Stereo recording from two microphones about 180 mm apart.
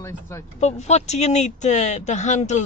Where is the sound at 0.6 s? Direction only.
40° left (ahead or behind).